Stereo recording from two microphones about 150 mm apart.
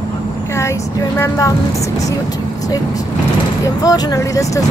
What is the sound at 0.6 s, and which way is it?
Speech, 20° left (ahead or behind).